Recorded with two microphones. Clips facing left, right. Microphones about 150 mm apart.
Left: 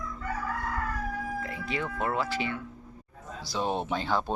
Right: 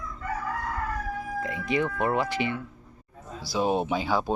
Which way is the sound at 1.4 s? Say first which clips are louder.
Right 6 dB; 15° right (ahead or behind).